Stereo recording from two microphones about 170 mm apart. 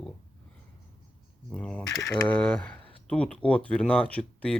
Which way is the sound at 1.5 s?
5° left (ahead or behind).